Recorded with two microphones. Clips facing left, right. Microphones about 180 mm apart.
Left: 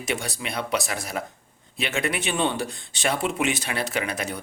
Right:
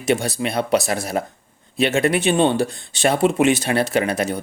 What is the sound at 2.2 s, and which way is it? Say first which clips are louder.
Speech: right 8 dB; 30° right (ahead or behind).